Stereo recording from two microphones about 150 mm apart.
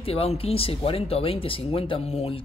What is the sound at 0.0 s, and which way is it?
Speech, 40° left (ahead or behind).